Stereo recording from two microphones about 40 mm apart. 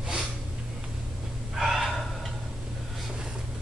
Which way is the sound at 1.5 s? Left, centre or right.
Centre.